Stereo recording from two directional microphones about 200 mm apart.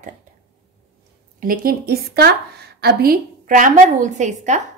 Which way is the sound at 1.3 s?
45° right (ahead or behind).